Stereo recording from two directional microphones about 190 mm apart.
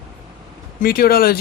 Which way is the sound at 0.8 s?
50° left (ahead or behind).